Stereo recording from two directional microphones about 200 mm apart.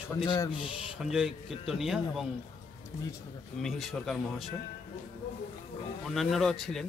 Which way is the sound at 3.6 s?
Centre (ahead or behind).